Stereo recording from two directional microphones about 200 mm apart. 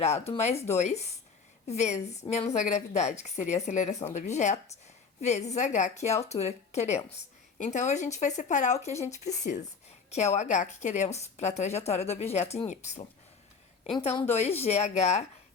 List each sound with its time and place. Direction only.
0.3 s a woman's voice: 35° left (ahead or behind)